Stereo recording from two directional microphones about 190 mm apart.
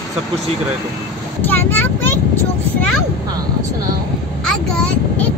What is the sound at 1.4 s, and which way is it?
Speech, 10° left (ahead or behind).